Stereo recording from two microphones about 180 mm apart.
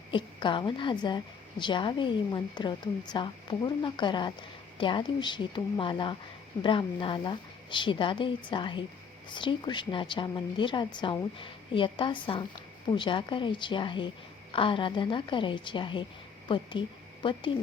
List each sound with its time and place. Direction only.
0.1 s a woman's voice: 25° left (ahead or behind)